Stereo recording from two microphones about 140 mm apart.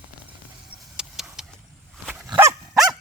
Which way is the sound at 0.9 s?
5° right (ahead or behind).